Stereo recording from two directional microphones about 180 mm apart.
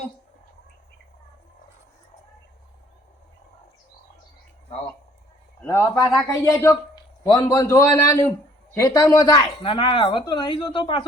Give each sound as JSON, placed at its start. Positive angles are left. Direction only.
{"t": 5.6, "sound": "a man's voice", "side_deg": 15}